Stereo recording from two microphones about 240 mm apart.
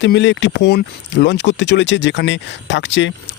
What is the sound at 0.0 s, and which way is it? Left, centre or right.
Speech, left.